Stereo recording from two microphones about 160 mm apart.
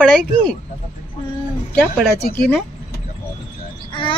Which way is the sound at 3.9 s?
30° left (ahead or behind).